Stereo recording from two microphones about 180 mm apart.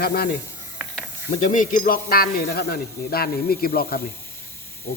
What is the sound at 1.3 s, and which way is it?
Speech, 45° left (ahead or behind).